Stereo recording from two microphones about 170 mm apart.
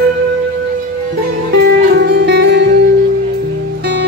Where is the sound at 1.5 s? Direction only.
70° right (ahead or behind).